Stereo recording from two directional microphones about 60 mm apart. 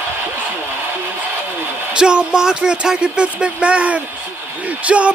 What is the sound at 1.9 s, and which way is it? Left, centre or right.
Speech, centre.